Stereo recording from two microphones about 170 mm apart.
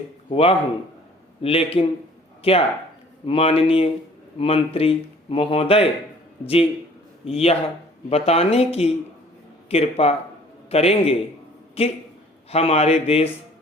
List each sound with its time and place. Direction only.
0.3 s speech: 35° left (ahead or behind)
7.3 s speech: 35° left (ahead or behind)